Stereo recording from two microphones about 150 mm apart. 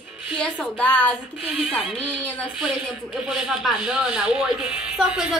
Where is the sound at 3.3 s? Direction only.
Centre (ahead or behind).